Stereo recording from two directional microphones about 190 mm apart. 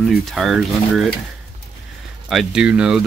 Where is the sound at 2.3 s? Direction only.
Centre (ahead or behind).